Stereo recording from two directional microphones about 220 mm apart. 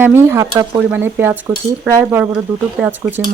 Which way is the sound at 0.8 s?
10° right (ahead or behind).